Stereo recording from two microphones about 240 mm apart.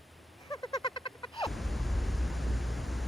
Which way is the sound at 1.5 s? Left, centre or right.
Centre.